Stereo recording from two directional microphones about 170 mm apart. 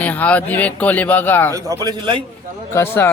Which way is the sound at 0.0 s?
10° left (ahead or behind).